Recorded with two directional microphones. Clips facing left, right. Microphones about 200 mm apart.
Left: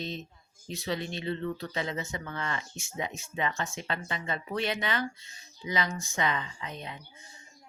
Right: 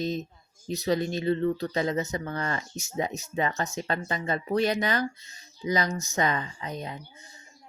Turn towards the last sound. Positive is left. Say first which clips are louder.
# right 5 dB
turn(degrees=-40)  # may be behind; listen again after turning